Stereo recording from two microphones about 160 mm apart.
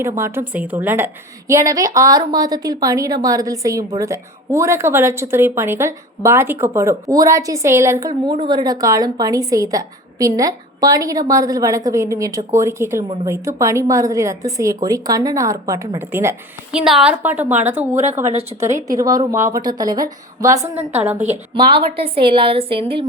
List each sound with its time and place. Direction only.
0.2 s a woman's voice: 15° right (ahead or behind)
16.7 s a woman's voice: 5° right (ahead or behind)
21.2 s a woman's voice: 35° right (ahead or behind)